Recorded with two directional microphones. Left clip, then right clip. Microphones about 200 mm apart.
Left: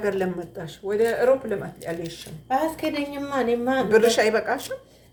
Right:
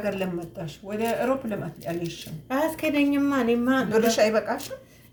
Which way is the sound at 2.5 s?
5° right (ahead or behind).